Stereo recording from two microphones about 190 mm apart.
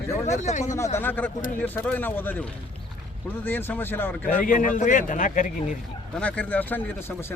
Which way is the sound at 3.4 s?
10° left (ahead or behind).